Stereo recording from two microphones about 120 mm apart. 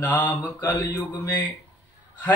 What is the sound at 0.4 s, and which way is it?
Mantra, 15° left (ahead or behind).